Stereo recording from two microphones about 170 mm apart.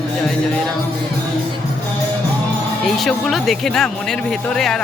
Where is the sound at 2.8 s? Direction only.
Centre (ahead or behind).